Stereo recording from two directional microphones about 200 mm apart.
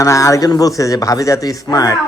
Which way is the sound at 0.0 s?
15° left (ahead or behind).